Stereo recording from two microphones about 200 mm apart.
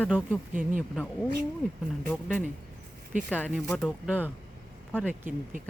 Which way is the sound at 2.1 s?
5° left (ahead or behind).